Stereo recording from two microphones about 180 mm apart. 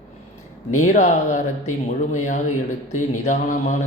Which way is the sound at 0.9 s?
40° left (ahead or behind).